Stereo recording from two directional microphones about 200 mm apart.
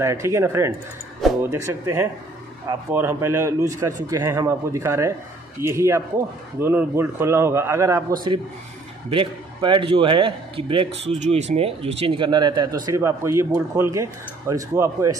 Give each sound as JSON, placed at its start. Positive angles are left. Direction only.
{"t": 0.0, "sound": "a man's voice", "side_deg": -15}
{"t": 9.1, "sound": "a man's voice", "side_deg": -25}